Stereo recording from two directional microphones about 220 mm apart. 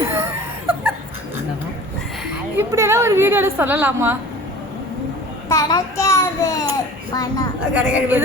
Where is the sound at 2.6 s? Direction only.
10° right (ahead or behind).